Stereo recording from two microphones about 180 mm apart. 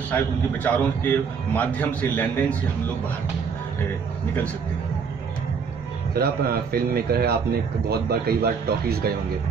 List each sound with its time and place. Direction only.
0.1 s a man's voice: 10° left (ahead or behind)
6.1 s a man's voice: 55° right (ahead or behind)